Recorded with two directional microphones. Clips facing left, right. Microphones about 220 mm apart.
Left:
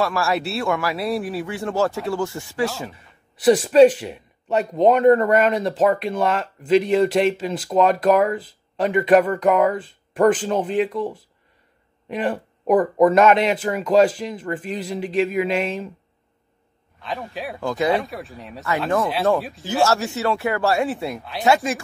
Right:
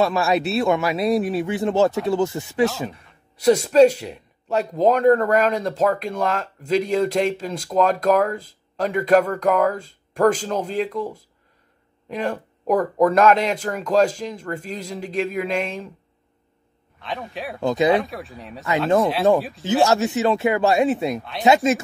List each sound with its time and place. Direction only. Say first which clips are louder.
0.0 s speech: right 3 dB; 20° right (ahead or behind)
2.9 s a man's voice: right 3 dB; centre (ahead or behind)
17.0 s a man's voice: left 1 dB; centre (ahead or behind)
17.6 s speech: right 3 dB; 20° right (ahead or behind)
17.9 s a man's voice: right 2 dB; centre (ahead or behind)
19.6 s speech: right 2 dB; 20° right (ahead or behind)
21.2 s a man's voice: even; centre (ahead or behind)